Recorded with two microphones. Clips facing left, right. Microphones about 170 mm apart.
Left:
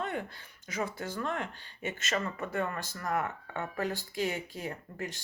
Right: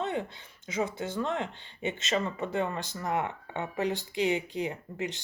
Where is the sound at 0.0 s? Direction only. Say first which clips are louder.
Right 3 dB; 20° right (ahead or behind).